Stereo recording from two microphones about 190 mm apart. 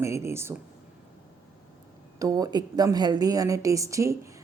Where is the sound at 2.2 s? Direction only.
20° right (ahead or behind).